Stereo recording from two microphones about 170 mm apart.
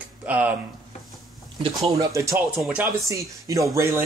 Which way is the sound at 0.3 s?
10° right (ahead or behind).